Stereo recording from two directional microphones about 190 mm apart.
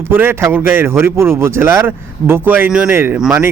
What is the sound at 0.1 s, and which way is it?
A man's voice, 10° right (ahead or behind).